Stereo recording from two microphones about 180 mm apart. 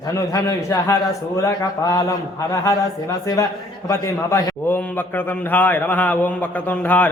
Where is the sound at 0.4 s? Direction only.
15° left (ahead or behind).